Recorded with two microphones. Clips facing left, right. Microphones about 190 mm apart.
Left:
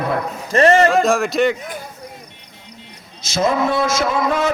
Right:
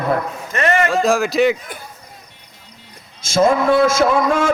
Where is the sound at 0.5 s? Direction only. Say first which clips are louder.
Left 5 dB; 35° left (ahead or behind).